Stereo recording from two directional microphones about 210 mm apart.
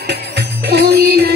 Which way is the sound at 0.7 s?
50° right (ahead or behind).